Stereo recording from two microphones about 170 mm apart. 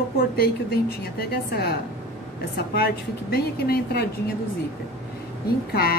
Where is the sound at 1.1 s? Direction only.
65° left (ahead or behind).